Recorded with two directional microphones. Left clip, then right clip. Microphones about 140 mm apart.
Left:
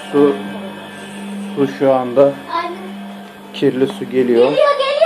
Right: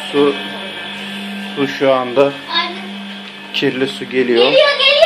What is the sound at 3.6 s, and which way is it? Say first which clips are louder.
Speech: left 2 dB; 5° left (ahead or behind).